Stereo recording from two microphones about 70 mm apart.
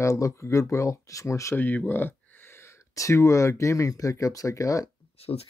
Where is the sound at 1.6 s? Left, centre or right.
Left.